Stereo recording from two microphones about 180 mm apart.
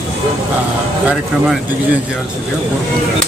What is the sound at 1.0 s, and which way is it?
Speech, 5° right (ahead or behind).